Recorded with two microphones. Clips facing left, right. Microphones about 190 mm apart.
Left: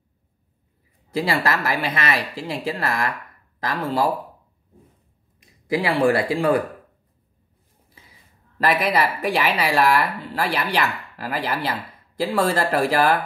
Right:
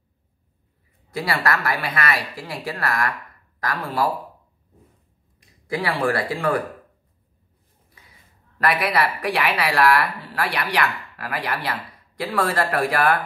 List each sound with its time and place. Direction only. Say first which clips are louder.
1.1 s speech: left 2 dB; 25° left (ahead or behind)
5.7 s speech: left 4 dB; 25° left (ahead or behind)
8.6 s speech: left 1 dB; 25° left (ahead or behind)